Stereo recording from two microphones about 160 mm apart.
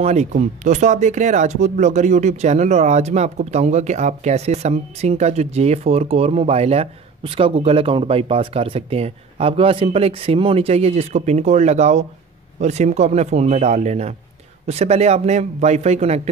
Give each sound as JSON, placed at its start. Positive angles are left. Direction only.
{"t": 0.0, "sound": "speech", "side_deg": -45}